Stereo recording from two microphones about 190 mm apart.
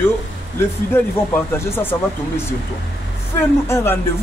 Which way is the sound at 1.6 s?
10° left (ahead or behind).